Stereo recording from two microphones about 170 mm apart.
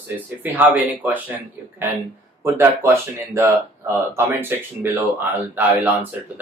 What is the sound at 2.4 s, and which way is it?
Speech, 15° right (ahead or behind).